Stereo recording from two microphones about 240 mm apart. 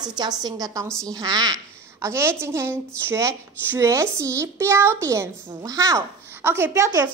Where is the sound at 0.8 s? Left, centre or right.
Centre.